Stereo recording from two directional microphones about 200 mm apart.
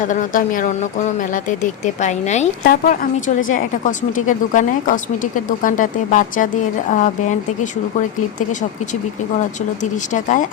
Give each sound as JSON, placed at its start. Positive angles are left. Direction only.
{"t": 0.0, "sound": "speech", "side_deg": 40}
{"t": 2.6, "sound": "speech", "side_deg": 45}
{"t": 10.1, "sound": "speech", "side_deg": 40}